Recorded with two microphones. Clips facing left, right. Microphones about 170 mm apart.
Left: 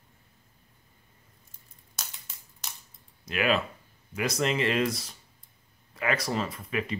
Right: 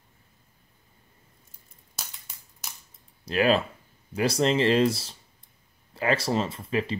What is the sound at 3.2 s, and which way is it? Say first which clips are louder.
Speech: right 4 dB; 35° right (ahead or behind).